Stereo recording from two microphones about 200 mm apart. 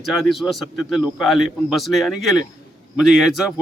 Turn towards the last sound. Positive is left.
turn(degrees=0)  # may be behind; listen again after turning